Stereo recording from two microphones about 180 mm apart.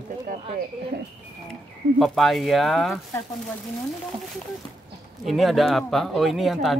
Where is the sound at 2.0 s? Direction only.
Centre (ahead or behind).